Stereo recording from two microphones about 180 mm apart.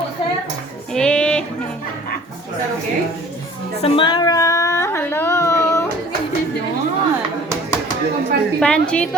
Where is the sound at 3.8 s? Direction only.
30° left (ahead or behind).